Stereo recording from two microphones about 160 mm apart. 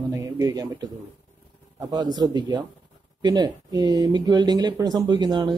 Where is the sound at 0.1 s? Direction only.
20° right (ahead or behind).